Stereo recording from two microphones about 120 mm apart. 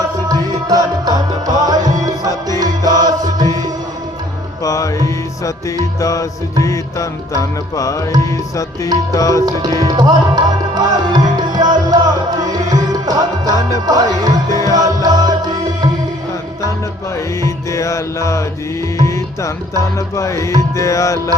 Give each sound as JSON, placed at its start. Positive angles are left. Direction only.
{"t": 0.3, "sound": "music", "side_deg": -30}
{"t": 4.6, "sound": "music", "side_deg": 25}
{"t": 9.5, "sound": "music", "side_deg": -30}
{"t": 12.4, "sound": "tabla", "side_deg": -30}
{"t": 13.8, "sound": "music", "side_deg": -35}
{"t": 14.5, "sound": "music", "side_deg": 25}
{"t": 14.8, "sound": "music", "side_deg": -30}
{"t": 17.4, "sound": "music", "side_deg": 25}